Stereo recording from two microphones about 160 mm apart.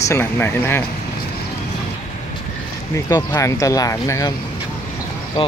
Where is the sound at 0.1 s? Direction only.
15° left (ahead or behind).